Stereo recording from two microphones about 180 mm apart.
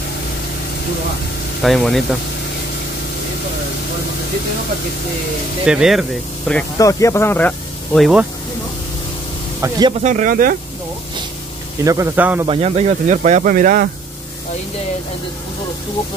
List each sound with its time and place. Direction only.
1.6 s speech: centre (ahead or behind)
5.7 s speech: 5° right (ahead or behind)
6.8 s speech: 20° left (ahead or behind); by 8.3 s centre (ahead or behind)
9.6 s speech: 20° right (ahead or behind)
10.0 s speech: 45° right (ahead or behind)
11.8 s speech: 15° right (ahead or behind)
12.4 s speech: 35° right (ahead or behind); by 13.8 s 50° right (ahead or behind)